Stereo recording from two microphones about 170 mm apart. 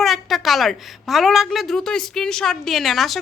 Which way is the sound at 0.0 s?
Centre (ahead or behind).